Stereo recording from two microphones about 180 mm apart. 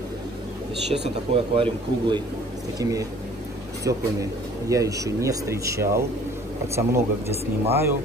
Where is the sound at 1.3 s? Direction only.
30° right (ahead or behind); by 7.0 s 15° right (ahead or behind).